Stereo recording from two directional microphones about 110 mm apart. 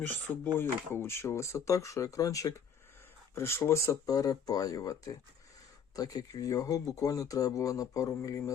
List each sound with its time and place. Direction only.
0.0 s speech: 20° left (ahead or behind)